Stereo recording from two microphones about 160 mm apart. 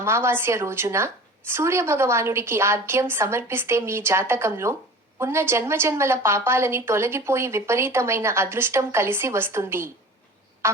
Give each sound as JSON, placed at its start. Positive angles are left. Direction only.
{"t": 0.0, "sound": "a woman's voice", "side_deg": -15}